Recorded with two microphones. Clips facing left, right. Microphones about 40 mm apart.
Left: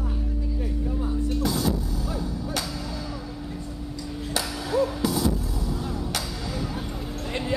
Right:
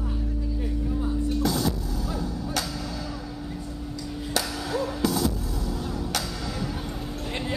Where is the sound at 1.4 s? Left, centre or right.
Centre.